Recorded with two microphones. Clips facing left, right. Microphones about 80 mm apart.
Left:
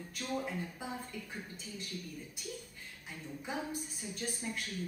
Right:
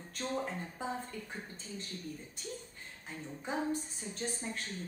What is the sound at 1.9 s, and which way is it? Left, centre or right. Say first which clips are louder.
Speech: right 1 dB; right.